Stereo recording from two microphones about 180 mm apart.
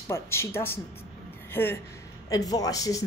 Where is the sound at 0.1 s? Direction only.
15° left (ahead or behind).